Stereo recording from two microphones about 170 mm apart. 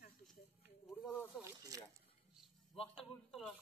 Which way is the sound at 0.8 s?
Centre (ahead or behind).